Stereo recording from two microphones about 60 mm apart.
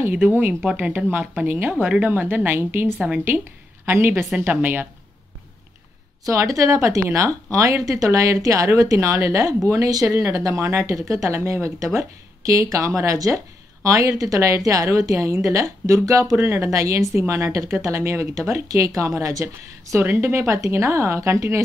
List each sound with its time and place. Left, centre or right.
0.3 s a woman's voice: right
0.7 s a woman's voice: right
2.1 s a woman's voice: right
6.2 s a woman's voice: right
10.0 s a woman's voice: right
11.3 s a woman's voice: right
16.7 s a woman's voice: right
20.0 s speech: right